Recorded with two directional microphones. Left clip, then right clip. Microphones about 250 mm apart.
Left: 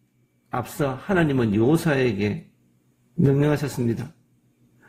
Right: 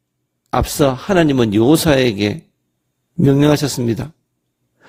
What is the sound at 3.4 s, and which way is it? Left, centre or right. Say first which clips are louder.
Speech: right 8 dB; right.